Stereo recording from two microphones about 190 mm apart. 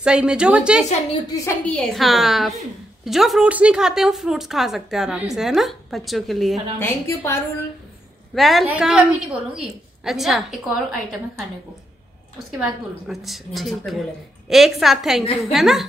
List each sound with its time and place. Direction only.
0.0 s a woman's voice: 5° right (ahead or behind)
1.3 s a woman's voice: 15° left (ahead or behind)
1.8 s a woman's voice: centre (ahead or behind)
6.8 s a woman's voice: 10° left (ahead or behind)
8.4 s a woman's voice: centre (ahead or behind)
12.5 s a woman's voice: centre (ahead or behind)